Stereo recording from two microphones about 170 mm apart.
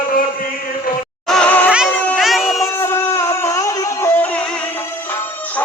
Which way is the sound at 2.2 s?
Centre (ahead or behind).